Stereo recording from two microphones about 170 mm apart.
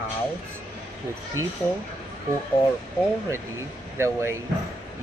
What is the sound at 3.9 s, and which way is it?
Speech, 15° right (ahead or behind).